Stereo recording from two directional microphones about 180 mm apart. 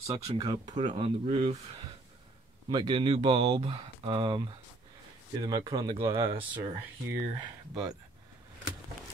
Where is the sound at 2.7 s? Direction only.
25° right (ahead or behind).